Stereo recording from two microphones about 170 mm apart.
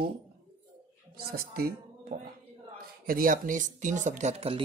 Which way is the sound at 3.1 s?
55° right (ahead or behind).